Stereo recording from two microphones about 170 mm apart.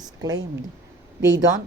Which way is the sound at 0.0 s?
20° right (ahead or behind).